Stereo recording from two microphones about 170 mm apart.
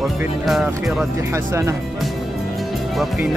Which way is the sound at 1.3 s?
15° right (ahead or behind).